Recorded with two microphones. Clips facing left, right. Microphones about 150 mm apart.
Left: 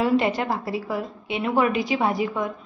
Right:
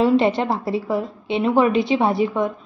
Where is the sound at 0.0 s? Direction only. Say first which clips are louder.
Right 4 dB; 25° right (ahead or behind).